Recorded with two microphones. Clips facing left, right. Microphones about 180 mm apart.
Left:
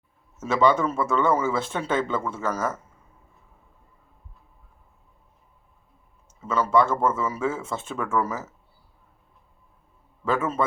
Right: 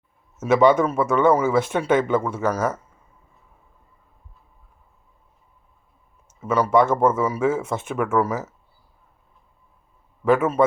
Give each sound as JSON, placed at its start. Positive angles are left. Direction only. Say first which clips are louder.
{"t": 0.3, "sound": "speech", "louder": "right 5 dB", "side_deg": -20}
{"t": 6.2, "sound": "speech", "louder": "right 4 dB", "side_deg": -15}
{"t": 10.2, "sound": "speech", "louder": "right 7 dB", "side_deg": -15}